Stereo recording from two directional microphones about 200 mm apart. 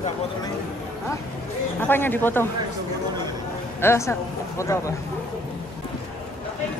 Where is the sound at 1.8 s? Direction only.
10° left (ahead or behind).